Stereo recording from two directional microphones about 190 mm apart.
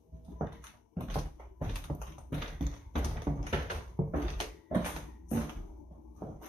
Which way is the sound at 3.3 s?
25° right (ahead or behind).